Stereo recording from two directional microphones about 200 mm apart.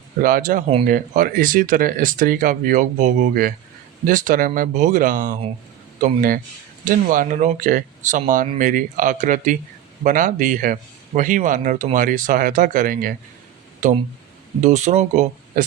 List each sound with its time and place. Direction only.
0.2 s a man's voice: 45° right (ahead or behind)